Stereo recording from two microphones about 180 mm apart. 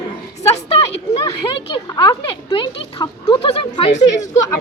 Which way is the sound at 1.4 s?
25° left (ahead or behind).